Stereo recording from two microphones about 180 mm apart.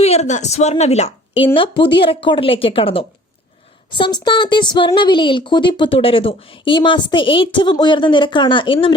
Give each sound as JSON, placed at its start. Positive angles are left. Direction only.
{"t": 0.0, "sound": "speech", "side_deg": 35}
{"t": 1.5, "sound": "speech", "side_deg": 30}